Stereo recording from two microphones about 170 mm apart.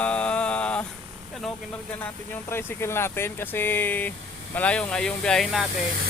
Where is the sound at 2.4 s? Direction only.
15° left (ahead or behind).